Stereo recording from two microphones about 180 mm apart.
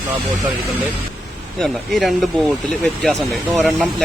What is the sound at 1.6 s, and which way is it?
Speech, centre (ahead or behind).